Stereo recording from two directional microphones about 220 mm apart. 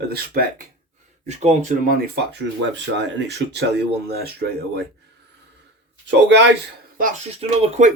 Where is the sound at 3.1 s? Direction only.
50° right (ahead or behind).